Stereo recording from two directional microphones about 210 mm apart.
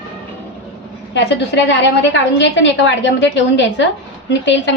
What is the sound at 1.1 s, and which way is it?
A woman's voice, 55° left (ahead or behind).